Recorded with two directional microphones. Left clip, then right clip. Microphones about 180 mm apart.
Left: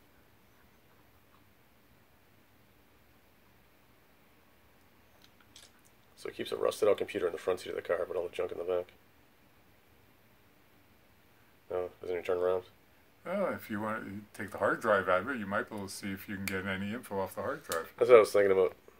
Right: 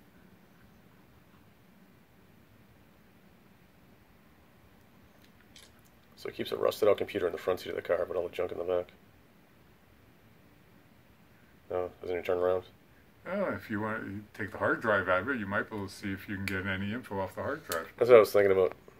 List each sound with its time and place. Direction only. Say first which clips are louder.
6.1 s speech: right 2 dB; centre (ahead or behind)
11.7 s a sound: right 2 dB; centre (ahead or behind)
13.2 s speech: even; 45° left (ahead or behind)
17.9 s speech: right 1 dB; centre (ahead or behind)